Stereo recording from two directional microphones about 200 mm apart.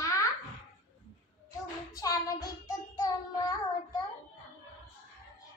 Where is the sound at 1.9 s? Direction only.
20° left (ahead or behind).